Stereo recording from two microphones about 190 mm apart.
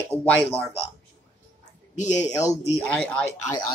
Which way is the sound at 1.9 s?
40° left (ahead or behind).